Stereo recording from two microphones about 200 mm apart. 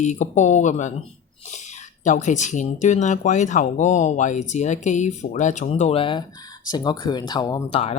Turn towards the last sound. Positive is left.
turn(degrees=30)  # may be behind; listen again after turning